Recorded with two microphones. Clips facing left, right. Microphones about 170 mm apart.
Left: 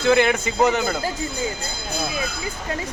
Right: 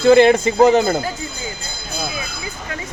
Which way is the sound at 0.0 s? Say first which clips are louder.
Right 7 dB; 35° right (ahead or behind).